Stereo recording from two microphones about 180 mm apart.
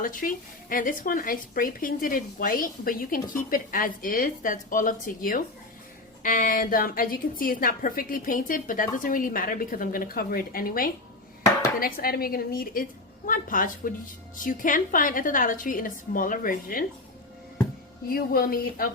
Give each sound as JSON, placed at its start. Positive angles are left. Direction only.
{"t": 0.0, "sound": "speech", "side_deg": 50}
{"t": 18.1, "sound": "speech", "side_deg": 55}